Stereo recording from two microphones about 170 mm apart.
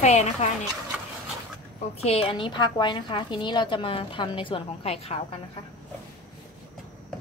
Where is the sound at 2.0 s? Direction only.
35° left (ahead or behind).